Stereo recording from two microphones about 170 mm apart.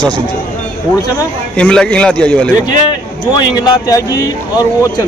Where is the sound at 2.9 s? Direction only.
25° left (ahead or behind).